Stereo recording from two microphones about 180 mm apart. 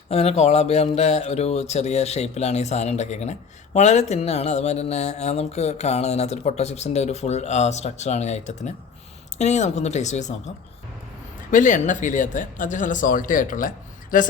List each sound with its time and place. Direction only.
0.1 s speech: 35° left (ahead or behind)
11.5 s speech: 45° left (ahead or behind)